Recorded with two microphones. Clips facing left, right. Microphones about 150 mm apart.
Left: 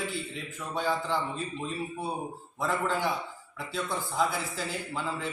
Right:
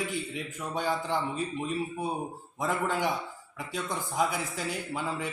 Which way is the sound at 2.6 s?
15° right (ahead or behind).